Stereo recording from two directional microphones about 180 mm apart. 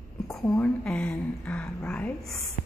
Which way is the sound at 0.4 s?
5° left (ahead or behind).